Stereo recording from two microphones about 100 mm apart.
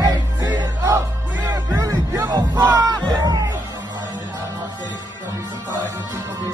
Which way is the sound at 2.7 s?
40° right (ahead or behind).